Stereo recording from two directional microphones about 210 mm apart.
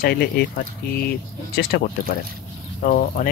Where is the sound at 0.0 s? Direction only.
50° left (ahead or behind).